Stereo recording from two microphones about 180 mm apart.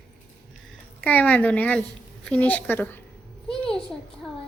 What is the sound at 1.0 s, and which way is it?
A woman's voice, 10° left (ahead or behind).